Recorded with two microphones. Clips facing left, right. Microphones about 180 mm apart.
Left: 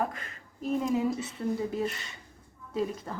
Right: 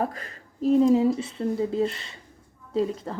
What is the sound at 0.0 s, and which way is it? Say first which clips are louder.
Speech: right 4 dB; 35° right (ahead or behind).